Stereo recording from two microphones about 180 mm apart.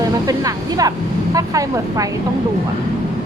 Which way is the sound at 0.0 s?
20° right (ahead or behind).